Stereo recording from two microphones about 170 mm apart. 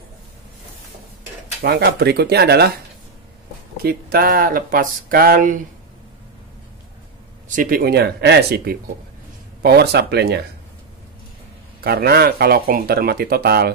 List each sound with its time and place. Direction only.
1.6 s speech: 70° right (ahead or behind)
3.7 s speech: 60° right (ahead or behind)
7.4 s speech: 55° right (ahead or behind); by 10.4 s 75° right (ahead or behind)
11.8 s speech: 65° right (ahead or behind)